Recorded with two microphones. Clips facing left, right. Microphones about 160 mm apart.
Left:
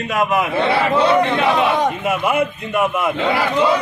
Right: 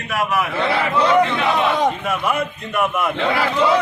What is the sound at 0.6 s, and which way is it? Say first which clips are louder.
Speech: left 3 dB; 30° left (ahead or behind).